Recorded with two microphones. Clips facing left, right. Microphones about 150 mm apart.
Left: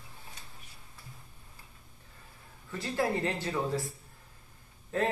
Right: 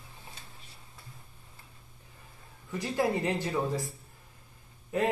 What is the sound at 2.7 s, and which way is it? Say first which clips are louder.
Speech: right 2 dB; 15° right (ahead or behind).